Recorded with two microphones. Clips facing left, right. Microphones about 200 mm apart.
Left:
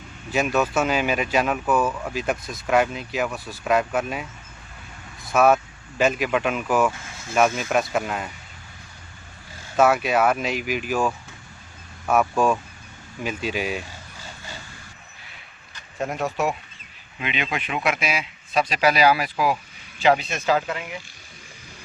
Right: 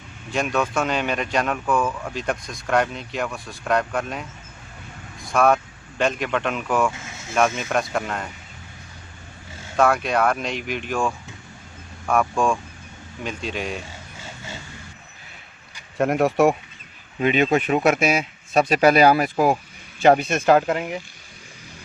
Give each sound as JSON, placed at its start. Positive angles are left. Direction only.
{"t": 0.3, "sound": "speech", "side_deg": 5}
{"t": 5.3, "sound": "speech", "side_deg": 5}
{"t": 9.7, "sound": "speech", "side_deg": 5}
{"t": 16.0, "sound": "speech", "side_deg": -60}
{"t": 17.2, "sound": "speech", "side_deg": -45}